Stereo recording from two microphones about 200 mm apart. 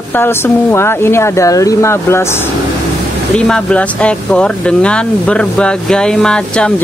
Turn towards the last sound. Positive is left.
turn(degrees=5)  # may be behind; listen again after turning